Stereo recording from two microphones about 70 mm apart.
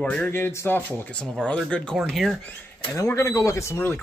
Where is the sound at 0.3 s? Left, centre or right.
Left.